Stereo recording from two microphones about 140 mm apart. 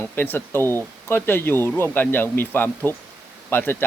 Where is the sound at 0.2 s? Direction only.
15° left (ahead or behind).